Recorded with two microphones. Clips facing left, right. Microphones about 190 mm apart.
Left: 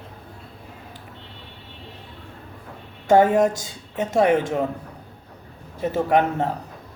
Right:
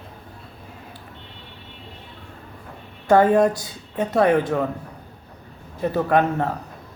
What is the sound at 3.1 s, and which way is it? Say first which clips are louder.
A man's voice: right 1 dB; 20° left (ahead or behind).